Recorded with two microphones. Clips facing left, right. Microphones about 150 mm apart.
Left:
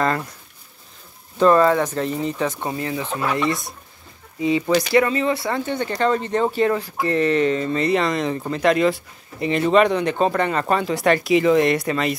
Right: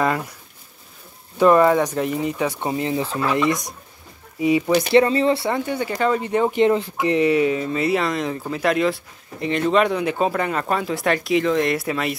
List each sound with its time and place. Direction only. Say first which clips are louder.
1.4 s speech: right 1 dB; 15° right (ahead or behind); by 3.2 s 30° right (ahead or behind)
3.4 s speech: right 2 dB; 20° right (ahead or behind)
4.9 s speech: right 5 dB; 30° right (ahead or behind)
5.5 s speech: right 1 dB; 10° right (ahead or behind)